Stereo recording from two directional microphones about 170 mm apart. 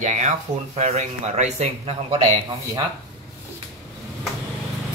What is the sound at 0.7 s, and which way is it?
Speech, 40° right (ahead or behind).